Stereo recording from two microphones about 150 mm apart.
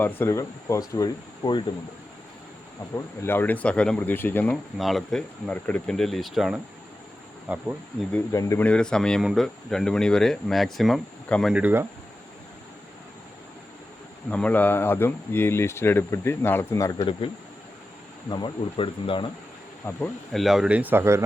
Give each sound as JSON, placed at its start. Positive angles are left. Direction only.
{"t": 0.0, "sound": "speech", "side_deg": 15}
{"t": 2.9, "sound": "speech", "side_deg": 15}
{"t": 4.8, "sound": "speech", "side_deg": 0}
{"t": 8.1, "sound": "speech", "side_deg": 20}
{"t": 8.6, "sound": "speech", "side_deg": 5}
{"t": 11.5, "sound": "speech", "side_deg": -15}
{"t": 14.3, "sound": "speech", "side_deg": 10}
{"t": 17.0, "sound": "speech", "side_deg": 35}
{"t": 18.3, "sound": "speech", "side_deg": 30}
{"t": 20.3, "sound": "speech", "side_deg": 0}